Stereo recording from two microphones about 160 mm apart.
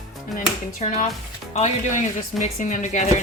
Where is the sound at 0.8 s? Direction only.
45° left (ahead or behind).